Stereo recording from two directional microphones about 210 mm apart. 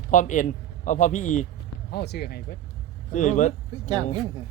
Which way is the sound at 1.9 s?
50° left (ahead or behind).